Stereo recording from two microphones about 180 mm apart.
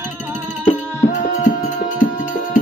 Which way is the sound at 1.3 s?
45° left (ahead or behind).